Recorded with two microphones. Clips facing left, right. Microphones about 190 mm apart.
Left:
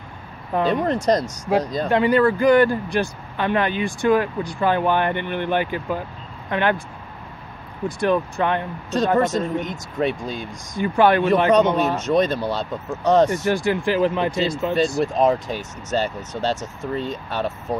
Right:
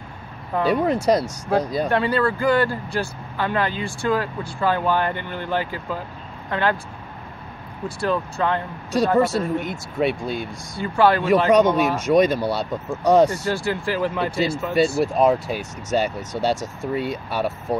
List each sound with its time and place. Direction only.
0.7 s speech: 10° right (ahead or behind)
1.9 s speech: 15° left (ahead or behind)
8.0 s speech: 15° left (ahead or behind)
8.9 s speech: 10° right (ahead or behind)
10.8 s speech: 20° left (ahead or behind)
11.5 s speech: 10° right (ahead or behind)
13.5 s speech: 15° left (ahead or behind)
14.3 s speech: 10° right (ahead or behind)